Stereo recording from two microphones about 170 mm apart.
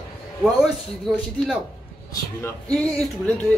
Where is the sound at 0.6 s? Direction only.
Centre (ahead or behind).